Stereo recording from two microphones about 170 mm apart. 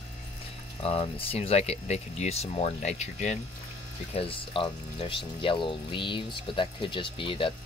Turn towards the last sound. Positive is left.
turn(degrees=30)  # may be behind; listen again after turning